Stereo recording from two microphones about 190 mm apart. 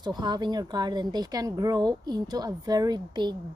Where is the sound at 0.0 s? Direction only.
25° right (ahead or behind).